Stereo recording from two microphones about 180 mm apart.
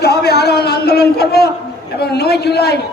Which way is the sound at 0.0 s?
65° left (ahead or behind).